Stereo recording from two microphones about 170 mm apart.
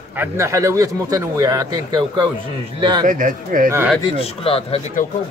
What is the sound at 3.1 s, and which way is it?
Speech, 50° right (ahead or behind).